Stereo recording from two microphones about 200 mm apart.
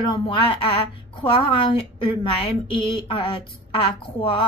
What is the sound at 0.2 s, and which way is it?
A woman's voice, 25° left (ahead or behind).